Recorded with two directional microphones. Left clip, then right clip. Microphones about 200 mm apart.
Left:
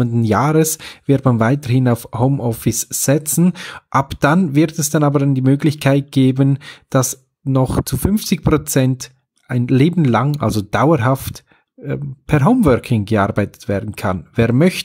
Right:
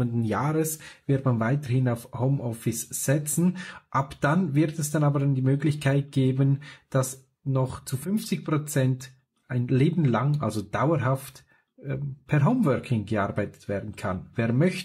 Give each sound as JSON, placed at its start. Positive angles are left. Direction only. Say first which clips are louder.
{"t": 0.0, "sound": "speech", "louder": "left 12 dB", "side_deg": 45}